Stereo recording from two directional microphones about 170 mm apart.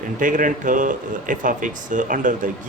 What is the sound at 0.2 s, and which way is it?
Speech, 50° right (ahead or behind).